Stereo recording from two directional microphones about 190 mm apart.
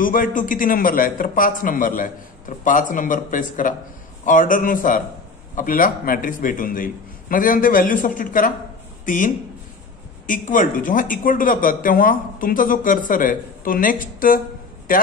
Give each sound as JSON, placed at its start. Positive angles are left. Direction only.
{"t": 0.0, "sound": "a man's voice", "side_deg": 45}